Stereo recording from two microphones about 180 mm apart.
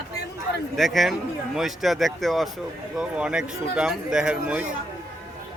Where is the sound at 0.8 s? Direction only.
Centre (ahead or behind).